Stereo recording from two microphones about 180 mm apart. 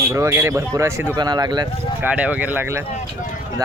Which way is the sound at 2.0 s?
5° right (ahead or behind).